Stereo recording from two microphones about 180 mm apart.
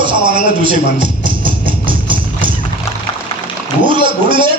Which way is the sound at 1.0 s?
25° right (ahead or behind).